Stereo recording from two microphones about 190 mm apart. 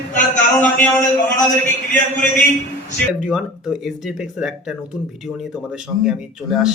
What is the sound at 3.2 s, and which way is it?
Speech, 5° right (ahead or behind).